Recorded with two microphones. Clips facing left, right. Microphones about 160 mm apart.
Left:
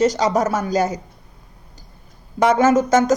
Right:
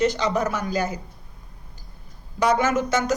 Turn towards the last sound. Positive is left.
turn(degrees=45)  # may be behind; listen again after turning